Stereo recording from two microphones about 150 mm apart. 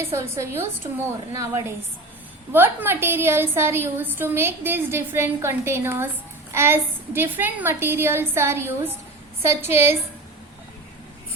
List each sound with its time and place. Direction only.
0.0 s a woman's voice: 20° right (ahead or behind)